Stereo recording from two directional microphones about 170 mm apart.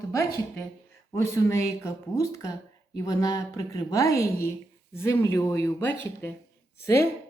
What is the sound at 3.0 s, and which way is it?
A woman's voice, 20° left (ahead or behind).